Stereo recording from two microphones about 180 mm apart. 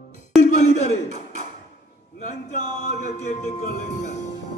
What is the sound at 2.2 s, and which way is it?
Music, 40° left (ahead or behind).